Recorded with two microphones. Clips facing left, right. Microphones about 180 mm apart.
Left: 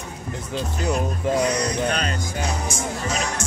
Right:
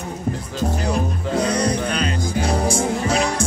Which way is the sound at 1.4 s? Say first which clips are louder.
Right 2 dB; 30° right (ahead or behind).